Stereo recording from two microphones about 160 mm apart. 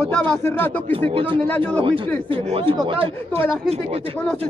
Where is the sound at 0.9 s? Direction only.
35° right (ahead or behind).